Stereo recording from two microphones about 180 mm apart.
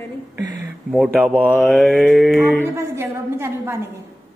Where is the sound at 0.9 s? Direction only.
5° right (ahead or behind).